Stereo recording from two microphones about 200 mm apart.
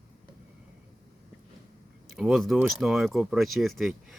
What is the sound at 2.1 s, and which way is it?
Speech, centre (ahead or behind).